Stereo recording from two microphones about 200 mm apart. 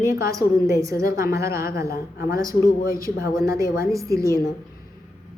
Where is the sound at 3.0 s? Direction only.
15° right (ahead or behind).